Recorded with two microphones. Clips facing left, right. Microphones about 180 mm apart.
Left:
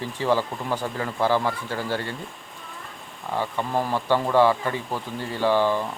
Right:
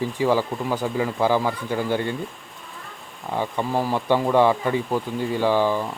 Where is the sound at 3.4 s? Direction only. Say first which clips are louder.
Right 2 dB; 15° right (ahead or behind).